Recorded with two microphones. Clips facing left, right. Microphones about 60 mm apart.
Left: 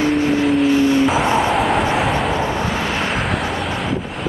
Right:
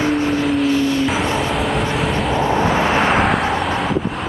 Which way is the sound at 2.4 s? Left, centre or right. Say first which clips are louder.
Right 4 dB; right.